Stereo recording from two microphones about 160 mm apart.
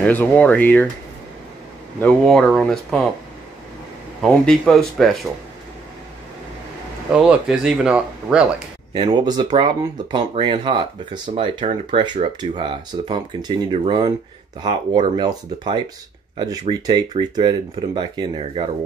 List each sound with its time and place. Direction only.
0.0 s speech: 10° left (ahead or behind)
2.0 s speech: 5° left (ahead or behind)
4.2 s speech: centre (ahead or behind)
7.2 s speech: 5° right (ahead or behind)
8.9 s speech: 25° right (ahead or behind)